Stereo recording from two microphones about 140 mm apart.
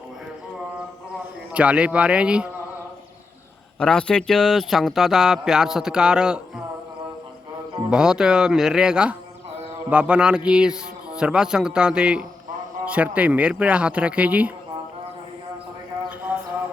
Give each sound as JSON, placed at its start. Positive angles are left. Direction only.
{"t": 1.5, "sound": "a man's voice", "side_deg": -10}
{"t": 3.8, "sound": "speech", "side_deg": 5}
{"t": 7.9, "sound": "a man's voice", "side_deg": -5}
{"t": 16.0, "sound": "a sound", "side_deg": -10}